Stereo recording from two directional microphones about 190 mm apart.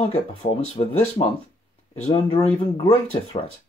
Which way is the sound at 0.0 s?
30° left (ahead or behind).